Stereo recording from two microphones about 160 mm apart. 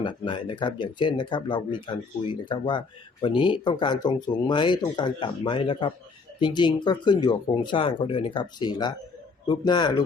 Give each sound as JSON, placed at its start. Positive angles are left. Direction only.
{"t": 0.0, "sound": "speech", "side_deg": 30}